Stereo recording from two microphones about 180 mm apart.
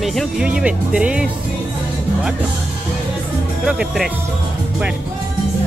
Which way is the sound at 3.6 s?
5° right (ahead or behind).